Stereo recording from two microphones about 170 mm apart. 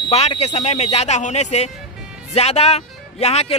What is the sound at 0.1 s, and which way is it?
Speech, 40° left (ahead or behind).